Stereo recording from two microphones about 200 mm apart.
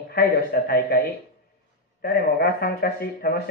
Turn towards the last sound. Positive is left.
turn(degrees=50)  # may be behind; listen again after turning